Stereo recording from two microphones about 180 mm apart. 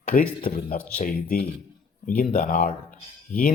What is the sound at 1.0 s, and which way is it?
Speech, 55° left (ahead or behind).